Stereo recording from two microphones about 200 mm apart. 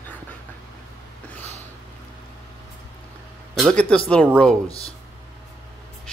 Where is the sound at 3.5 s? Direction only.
Centre (ahead or behind).